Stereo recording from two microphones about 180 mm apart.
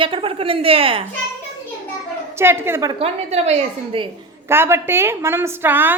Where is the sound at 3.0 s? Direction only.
35° right (ahead or behind).